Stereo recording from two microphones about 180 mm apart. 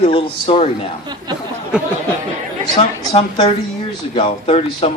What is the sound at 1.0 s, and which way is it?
Speech, 25° right (ahead or behind).